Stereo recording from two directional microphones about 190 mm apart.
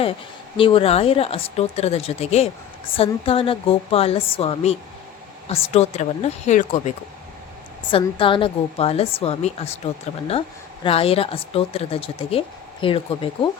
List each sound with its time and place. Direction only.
0.5 s speech: 30° left (ahead or behind)
7.9 s speech: 25° left (ahead or behind)